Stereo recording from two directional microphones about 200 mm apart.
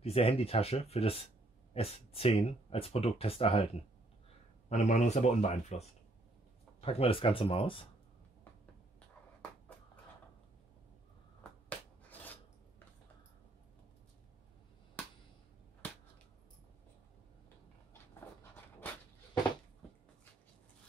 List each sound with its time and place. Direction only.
0.0 s speech: 30° left (ahead or behind)
11.7 s rub: 10° left (ahead or behind)
15.0 s a sound: 10° left (ahead or behind)